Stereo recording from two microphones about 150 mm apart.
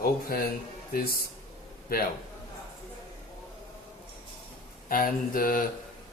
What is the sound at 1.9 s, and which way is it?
Speech, 85° left.